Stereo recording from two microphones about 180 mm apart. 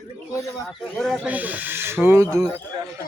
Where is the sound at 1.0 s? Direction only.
5° right (ahead or behind).